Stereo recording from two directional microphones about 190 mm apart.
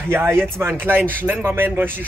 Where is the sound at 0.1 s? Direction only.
10° right (ahead or behind).